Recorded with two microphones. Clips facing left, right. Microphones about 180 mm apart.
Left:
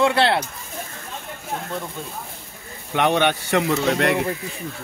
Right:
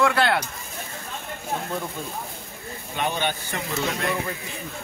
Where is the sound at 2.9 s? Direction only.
70° left (ahead or behind).